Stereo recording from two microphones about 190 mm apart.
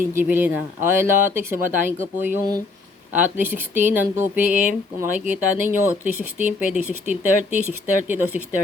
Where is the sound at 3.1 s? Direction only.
10° right (ahead or behind).